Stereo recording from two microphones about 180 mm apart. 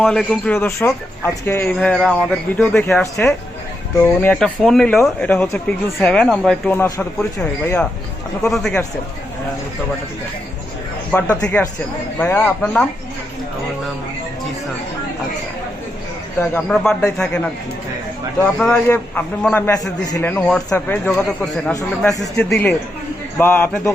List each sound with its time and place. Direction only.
0.0 s speech: 5° left (ahead or behind)
8.4 s speech: 5° left (ahead or behind)
11.1 s speech: 5° left (ahead or behind)
16.4 s speech: 5° left (ahead or behind)
18.4 s speech: 5° left (ahead or behind)
21.8 s speech: 20° left (ahead or behind)
22.4 s speech: 5° left (ahead or behind)